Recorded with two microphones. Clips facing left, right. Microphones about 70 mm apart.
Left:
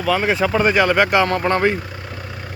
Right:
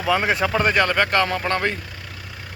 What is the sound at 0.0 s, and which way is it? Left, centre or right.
Speech, centre.